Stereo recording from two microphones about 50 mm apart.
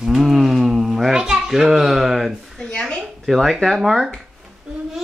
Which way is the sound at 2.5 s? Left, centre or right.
Centre.